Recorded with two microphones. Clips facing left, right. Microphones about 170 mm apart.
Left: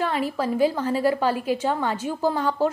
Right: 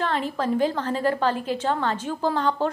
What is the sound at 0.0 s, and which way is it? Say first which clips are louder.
A woman's voice: left 1 dB; 10° left (ahead or behind).